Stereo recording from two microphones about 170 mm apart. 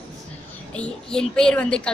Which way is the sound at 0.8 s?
5° left (ahead or behind).